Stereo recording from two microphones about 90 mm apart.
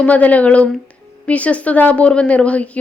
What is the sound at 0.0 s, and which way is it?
A woman's voice, 15° left (ahead or behind).